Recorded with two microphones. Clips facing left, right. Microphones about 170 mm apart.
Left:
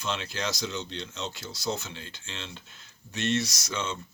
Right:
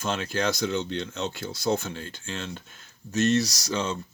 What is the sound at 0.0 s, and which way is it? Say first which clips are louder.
Speech: right 5 dB; 50° right (ahead or behind).